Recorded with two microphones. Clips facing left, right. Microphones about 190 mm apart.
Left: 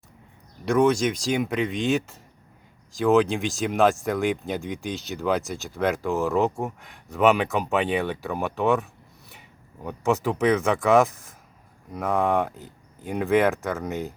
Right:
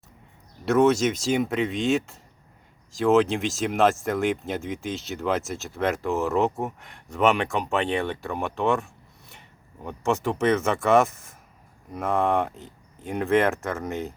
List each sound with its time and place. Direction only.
0.6 s speech: 5° right (ahead or behind)